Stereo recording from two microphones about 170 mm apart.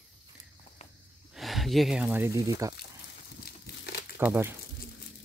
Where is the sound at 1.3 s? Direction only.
Centre (ahead or behind); by 2.7 s 20° right (ahead or behind).